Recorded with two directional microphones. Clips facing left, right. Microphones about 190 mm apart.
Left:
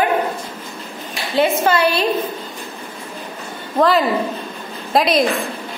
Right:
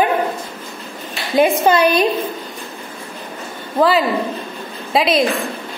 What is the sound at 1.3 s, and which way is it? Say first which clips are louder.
Speech: right 3 dB; 15° right (ahead or behind).